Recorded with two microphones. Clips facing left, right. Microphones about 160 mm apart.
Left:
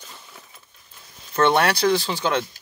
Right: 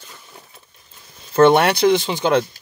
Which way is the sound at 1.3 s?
25° right (ahead or behind).